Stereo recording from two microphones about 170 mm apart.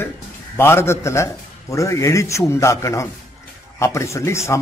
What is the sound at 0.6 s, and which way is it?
A man's voice, 15° left (ahead or behind).